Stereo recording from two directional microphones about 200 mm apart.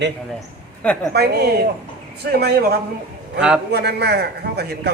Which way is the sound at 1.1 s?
55° right (ahead or behind).